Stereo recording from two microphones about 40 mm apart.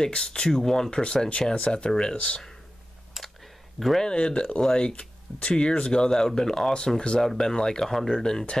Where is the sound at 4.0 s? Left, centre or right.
Left.